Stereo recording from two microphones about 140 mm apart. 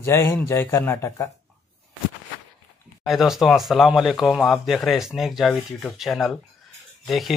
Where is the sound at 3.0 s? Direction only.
Centre (ahead or behind).